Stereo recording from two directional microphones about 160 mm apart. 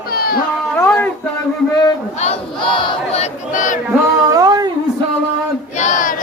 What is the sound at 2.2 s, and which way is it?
Battle cry, 30° left (ahead or behind).